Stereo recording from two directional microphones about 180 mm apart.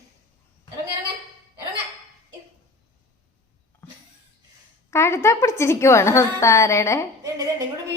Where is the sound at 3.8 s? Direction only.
10° left (ahead or behind).